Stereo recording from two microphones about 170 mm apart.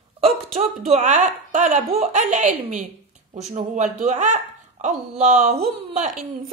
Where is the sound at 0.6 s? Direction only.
45° right (ahead or behind).